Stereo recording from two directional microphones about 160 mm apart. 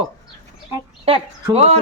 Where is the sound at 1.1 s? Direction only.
35° right (ahead or behind).